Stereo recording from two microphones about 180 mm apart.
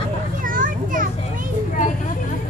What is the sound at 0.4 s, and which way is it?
Children playing, 50° right (ahead or behind).